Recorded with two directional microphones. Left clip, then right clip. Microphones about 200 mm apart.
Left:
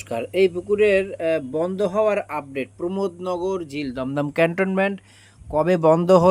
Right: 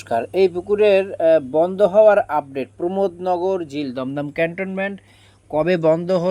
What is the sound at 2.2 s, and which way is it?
Speech, 50° right (ahead or behind).